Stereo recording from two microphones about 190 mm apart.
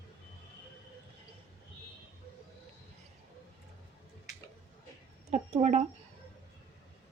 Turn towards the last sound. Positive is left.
turn(degrees=-35)  # may be behind; listen again after turning